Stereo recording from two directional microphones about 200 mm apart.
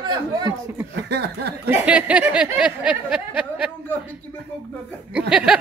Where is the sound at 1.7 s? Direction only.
5° right (ahead or behind).